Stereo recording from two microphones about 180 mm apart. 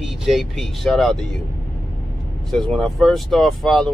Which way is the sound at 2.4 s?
Centre (ahead or behind).